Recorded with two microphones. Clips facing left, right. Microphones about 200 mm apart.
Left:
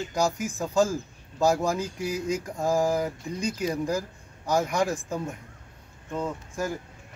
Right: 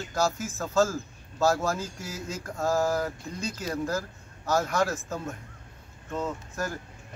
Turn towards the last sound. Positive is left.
turn(degrees=10)  # may be behind; listen again after turning